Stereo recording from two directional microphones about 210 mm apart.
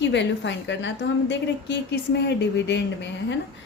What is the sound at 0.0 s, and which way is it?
A woman's voice, 55° left (ahead or behind).